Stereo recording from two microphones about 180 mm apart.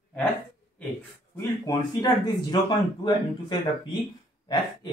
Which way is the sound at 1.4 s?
20° left (ahead or behind).